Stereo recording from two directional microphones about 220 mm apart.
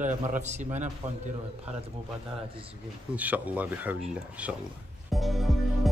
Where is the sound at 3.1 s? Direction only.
5° right (ahead or behind).